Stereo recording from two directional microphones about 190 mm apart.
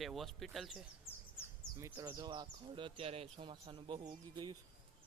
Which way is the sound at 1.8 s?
15° right (ahead or behind).